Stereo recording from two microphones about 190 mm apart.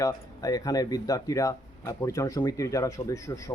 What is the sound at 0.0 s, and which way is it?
Speech, 20° left (ahead or behind).